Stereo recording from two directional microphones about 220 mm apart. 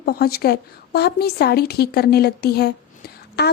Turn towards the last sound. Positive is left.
turn(degrees=45)  # may be behind; listen again after turning